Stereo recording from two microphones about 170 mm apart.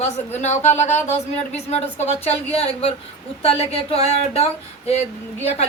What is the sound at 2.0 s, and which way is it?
Speech, 35° left (ahead or behind).